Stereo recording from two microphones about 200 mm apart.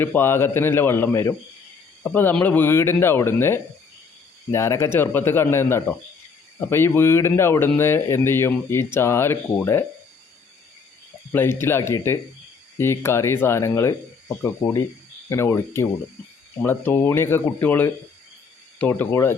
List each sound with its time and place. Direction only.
0.0 s speech: 10° left (ahead or behind)
11.3 s speech: 10° left (ahead or behind)